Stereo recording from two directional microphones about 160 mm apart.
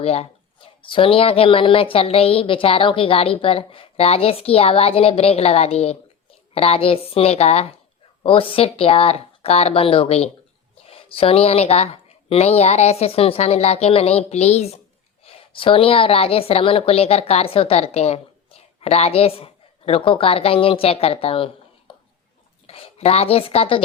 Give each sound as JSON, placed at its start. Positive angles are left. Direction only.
{"t": 0.0, "sound": "a woman's voice", "side_deg": 40}